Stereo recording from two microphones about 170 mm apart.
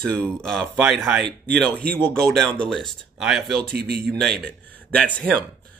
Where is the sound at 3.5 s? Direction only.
65° right (ahead or behind).